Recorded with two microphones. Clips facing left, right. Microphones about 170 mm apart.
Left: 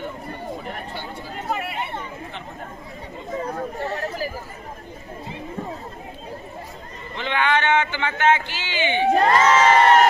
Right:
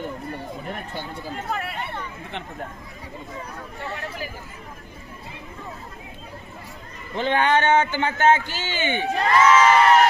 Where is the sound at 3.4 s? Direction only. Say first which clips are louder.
Left 7 dB; 50° left (ahead or behind).